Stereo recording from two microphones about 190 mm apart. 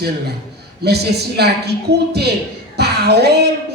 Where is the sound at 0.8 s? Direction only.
60° right (ahead or behind).